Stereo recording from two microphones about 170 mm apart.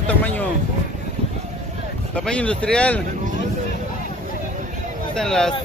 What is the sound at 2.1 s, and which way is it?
Speech, 5° left (ahead or behind).